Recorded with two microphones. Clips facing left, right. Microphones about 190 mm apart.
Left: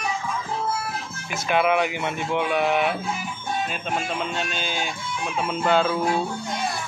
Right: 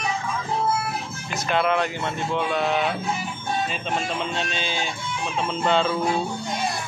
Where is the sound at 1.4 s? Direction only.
10° left (ahead or behind).